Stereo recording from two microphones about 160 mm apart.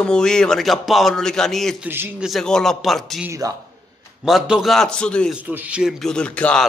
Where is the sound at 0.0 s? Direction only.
5° left (ahead or behind).